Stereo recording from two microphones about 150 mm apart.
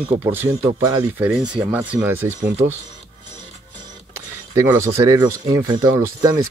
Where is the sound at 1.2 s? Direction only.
5° right (ahead or behind).